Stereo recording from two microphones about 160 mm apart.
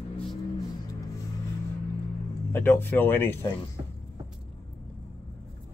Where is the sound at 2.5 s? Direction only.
15° left (ahead or behind).